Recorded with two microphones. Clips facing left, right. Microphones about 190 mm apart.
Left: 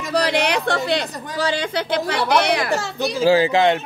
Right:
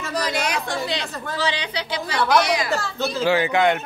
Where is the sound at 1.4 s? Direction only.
50° left (ahead or behind); by 3.0 s 65° left (ahead or behind).